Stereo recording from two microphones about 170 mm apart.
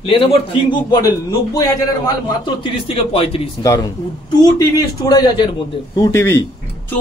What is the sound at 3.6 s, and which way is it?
A man's voice, 20° left (ahead or behind).